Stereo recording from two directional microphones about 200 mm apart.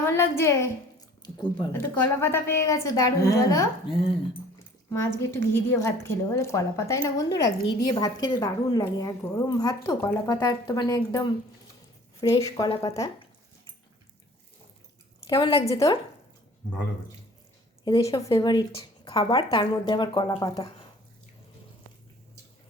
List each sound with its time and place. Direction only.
0.0 s a woman's voice: 10° left (ahead or behind)
2.2 s a woman's voice: 10° left (ahead or behind)
3.9 s a woman's voice: 25° left (ahead or behind)
4.9 s a woman's voice: 10° left (ahead or behind)
12.3 s a woman's voice: 15° left (ahead or behind)
15.3 s a woman's voice: 25° left (ahead or behind)
17.8 s a woman's voice: 20° left (ahead or behind)